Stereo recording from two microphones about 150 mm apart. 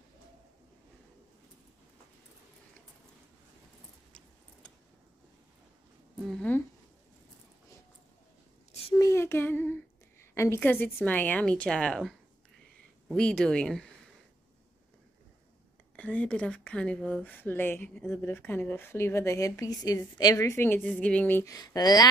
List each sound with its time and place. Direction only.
6.1 s a sound: centre (ahead or behind)
8.9 s child singing: 20° left (ahead or behind)
10.3 s speech: 20° left (ahead or behind)
16.0 s speech: 10° left (ahead or behind); by 22.0 s 25° left (ahead or behind)